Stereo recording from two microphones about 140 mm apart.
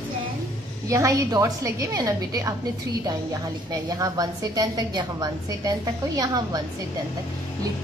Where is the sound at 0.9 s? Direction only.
25° right (ahead or behind).